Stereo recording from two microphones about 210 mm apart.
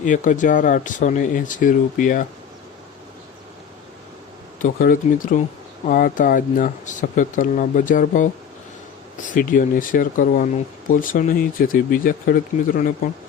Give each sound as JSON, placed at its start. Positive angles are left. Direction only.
{"t": 0.0, "sound": "speech", "side_deg": 35}
{"t": 4.6, "sound": "speech", "side_deg": 40}